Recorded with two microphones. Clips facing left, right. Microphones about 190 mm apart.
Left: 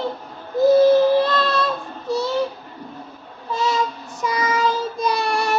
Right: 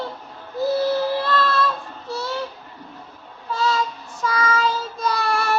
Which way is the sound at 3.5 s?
15° left (ahead or behind).